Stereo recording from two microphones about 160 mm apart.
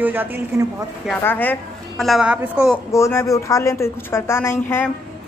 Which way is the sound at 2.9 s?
20° left (ahead or behind).